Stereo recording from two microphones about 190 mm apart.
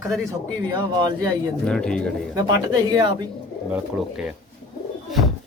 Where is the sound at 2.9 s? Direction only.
20° right (ahead or behind).